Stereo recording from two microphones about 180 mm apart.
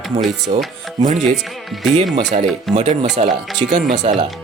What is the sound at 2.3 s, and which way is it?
Speech, 35° right (ahead or behind).